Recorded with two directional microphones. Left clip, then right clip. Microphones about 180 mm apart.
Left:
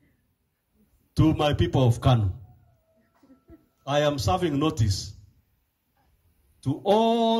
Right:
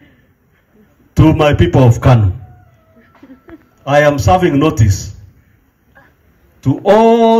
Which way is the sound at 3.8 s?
20° right (ahead or behind).